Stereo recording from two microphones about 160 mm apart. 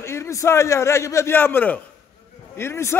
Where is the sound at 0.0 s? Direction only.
15° left (ahead or behind).